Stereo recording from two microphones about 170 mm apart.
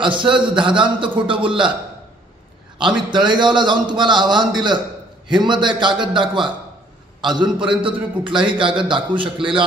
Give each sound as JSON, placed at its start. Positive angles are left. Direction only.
{"t": 0.0, "sound": "a man's voice", "side_deg": -30}
{"t": 3.1, "sound": "a man's voice", "side_deg": -25}